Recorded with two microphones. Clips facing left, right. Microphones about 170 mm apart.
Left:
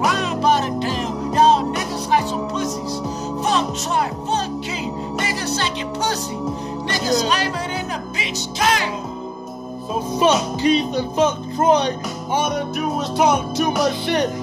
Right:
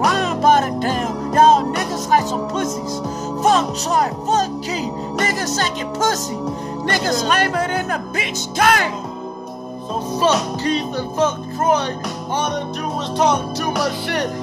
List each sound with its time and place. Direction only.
0.1 s music: 45° right (ahead or behind)
3.4 s music: 45° right (ahead or behind)
10.6 s speech: 15° left (ahead or behind)
13.2 s speech: 10° left (ahead or behind)